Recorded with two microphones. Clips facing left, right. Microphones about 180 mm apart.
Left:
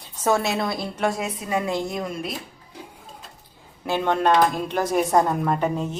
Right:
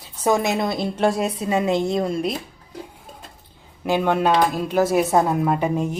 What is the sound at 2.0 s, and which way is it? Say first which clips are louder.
Speech: right 7 dB; 30° right (ahead or behind).